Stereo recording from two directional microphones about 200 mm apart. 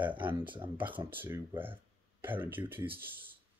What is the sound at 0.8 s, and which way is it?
Speech, 10° right (ahead or behind).